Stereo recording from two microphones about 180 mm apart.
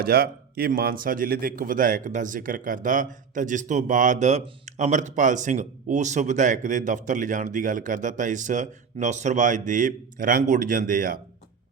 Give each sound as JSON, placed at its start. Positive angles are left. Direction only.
{"t": 0.0, "sound": "a man's voice", "side_deg": -55}